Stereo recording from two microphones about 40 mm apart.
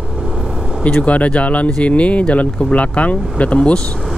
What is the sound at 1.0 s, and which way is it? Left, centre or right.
Speech, left.